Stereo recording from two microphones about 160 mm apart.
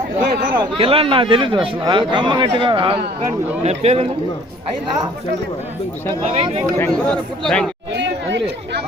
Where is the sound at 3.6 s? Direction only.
40° right (ahead or behind).